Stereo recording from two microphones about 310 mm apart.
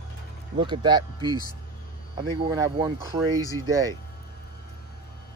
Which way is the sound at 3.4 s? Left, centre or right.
Centre.